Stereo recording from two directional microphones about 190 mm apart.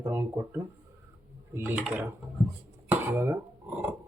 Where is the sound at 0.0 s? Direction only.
15° right (ahead or behind).